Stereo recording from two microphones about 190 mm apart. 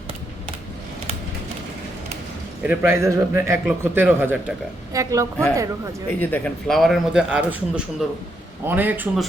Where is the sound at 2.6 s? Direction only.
15° right (ahead or behind).